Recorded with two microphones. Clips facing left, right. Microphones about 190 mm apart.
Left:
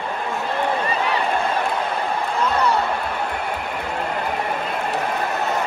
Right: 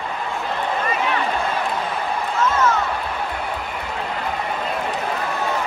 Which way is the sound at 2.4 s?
35° left (ahead or behind).